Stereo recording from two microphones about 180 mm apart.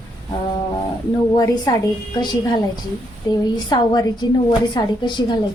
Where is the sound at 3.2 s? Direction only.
20° left (ahead or behind).